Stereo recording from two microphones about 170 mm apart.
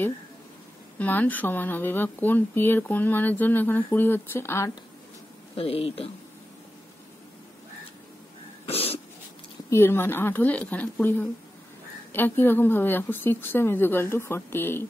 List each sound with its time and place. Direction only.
0.9 s speech: 10° left (ahead or behind)
5.6 s speech: 35° left (ahead or behind)
8.6 s dog: 35° left (ahead or behind)
9.7 s speech: 15° left (ahead or behind)